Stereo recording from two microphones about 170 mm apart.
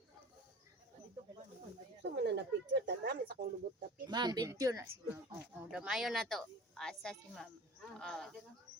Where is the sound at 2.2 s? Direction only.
90° right; by 3.4 s 70° right (ahead or behind).